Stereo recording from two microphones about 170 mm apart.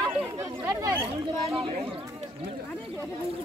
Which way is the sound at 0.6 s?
15° right (ahead or behind).